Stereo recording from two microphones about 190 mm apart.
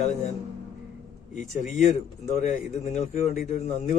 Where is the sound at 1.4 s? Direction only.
40° left (ahead or behind).